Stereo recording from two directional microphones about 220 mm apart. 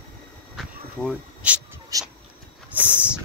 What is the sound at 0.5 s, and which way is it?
Insect, centre (ahead or behind).